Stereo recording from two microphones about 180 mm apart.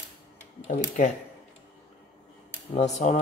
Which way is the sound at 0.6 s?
40° left (ahead or behind).